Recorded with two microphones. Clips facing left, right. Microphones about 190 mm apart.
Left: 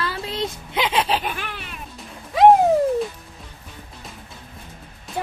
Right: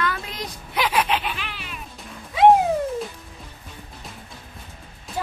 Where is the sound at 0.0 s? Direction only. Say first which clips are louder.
Left 2 dB; 30° left (ahead or behind).